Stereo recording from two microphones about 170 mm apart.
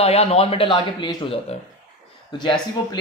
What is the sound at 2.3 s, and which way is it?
Speech, 25° left (ahead or behind).